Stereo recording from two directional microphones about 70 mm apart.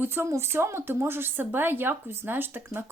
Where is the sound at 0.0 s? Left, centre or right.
Right.